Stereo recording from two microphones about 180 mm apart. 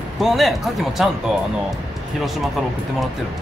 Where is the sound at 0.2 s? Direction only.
Centre (ahead or behind).